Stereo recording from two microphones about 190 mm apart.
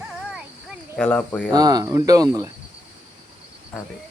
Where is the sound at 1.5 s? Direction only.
20° right (ahead or behind).